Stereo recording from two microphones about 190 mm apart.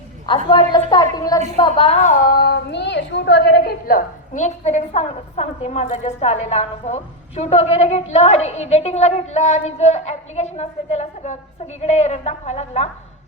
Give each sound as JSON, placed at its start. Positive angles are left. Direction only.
{"t": 0.3, "sound": "a woman's voice", "side_deg": 25}
{"t": 2.3, "sound": "a woman's voice", "side_deg": 55}